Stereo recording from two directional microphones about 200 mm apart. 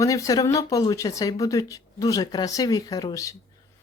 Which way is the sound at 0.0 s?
15° left (ahead or behind).